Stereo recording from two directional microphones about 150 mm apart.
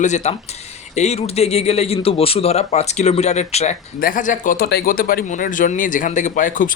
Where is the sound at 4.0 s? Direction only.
70° left (ahead or behind).